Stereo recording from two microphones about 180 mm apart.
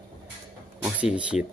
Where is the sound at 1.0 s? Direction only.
5° right (ahead or behind).